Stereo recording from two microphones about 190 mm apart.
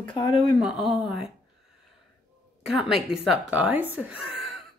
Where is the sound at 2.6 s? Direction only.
Centre (ahead or behind).